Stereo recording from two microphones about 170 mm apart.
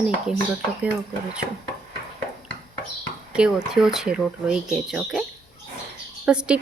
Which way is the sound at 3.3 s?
5° right (ahead or behind).